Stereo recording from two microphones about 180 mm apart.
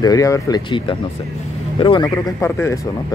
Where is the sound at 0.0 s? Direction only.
20° left (ahead or behind).